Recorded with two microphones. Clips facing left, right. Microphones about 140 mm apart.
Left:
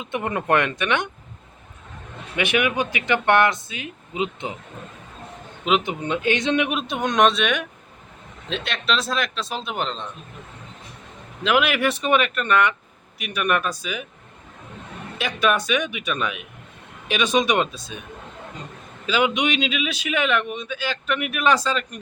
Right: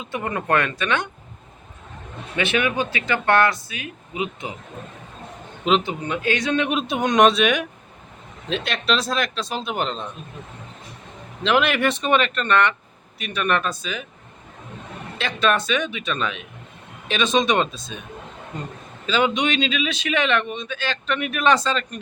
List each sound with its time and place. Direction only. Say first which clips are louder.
0.0 s speech: left 1 dB; 20° left (ahead or behind)
2.3 s speech: even; 15° left (ahead or behind)
5.8 s speech: left 1 dB; 20° left (ahead or behind)
6.7 s speech: right 3 dB; centre (ahead or behind)
11.4 s speech: right 1 dB; 5° left (ahead or behind)
15.2 s speech: even; 10° left (ahead or behind)
19.0 s speech: even; 10° left (ahead or behind)